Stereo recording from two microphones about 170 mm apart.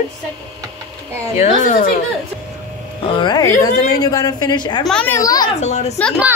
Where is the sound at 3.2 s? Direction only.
25° left (ahead or behind).